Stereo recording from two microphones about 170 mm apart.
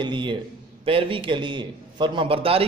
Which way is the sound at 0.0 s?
30° right (ahead or behind).